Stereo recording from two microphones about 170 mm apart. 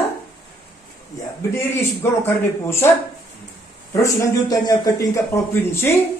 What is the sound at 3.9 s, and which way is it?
Speech, 20° left (ahead or behind).